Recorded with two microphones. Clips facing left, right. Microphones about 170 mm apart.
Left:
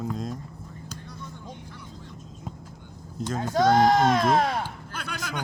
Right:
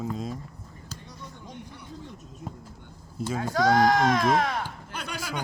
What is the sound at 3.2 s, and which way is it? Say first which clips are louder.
Speech: even; 10° right (ahead or behind).